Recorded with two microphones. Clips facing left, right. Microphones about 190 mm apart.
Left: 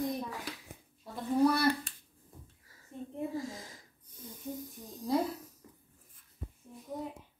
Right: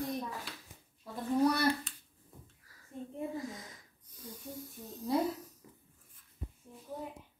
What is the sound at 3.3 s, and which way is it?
Wheeze, 25° left (ahead or behind).